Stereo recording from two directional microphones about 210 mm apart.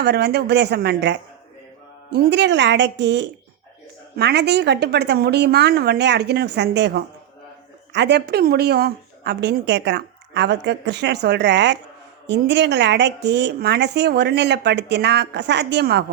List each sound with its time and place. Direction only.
0.0 s speech: 50° right (ahead or behind)